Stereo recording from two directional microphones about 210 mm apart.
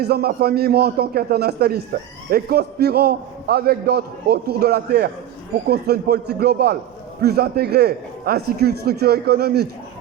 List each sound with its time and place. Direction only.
0.0 s a man's voice: 50° right (ahead or behind)